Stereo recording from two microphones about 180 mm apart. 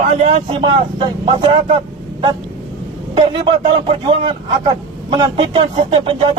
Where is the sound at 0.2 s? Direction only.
35° right (ahead or behind).